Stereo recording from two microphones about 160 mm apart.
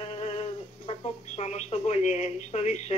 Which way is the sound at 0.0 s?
45° left (ahead or behind).